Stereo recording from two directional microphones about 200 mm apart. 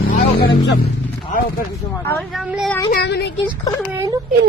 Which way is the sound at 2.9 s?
55° left (ahead or behind).